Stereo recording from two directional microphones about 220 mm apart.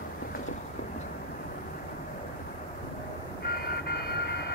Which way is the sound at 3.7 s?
50° left (ahead or behind).